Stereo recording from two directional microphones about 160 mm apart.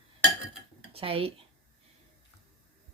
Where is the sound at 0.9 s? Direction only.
35° right (ahead or behind).